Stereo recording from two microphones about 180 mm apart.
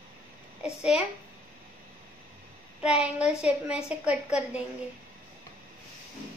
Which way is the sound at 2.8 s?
5° right (ahead or behind).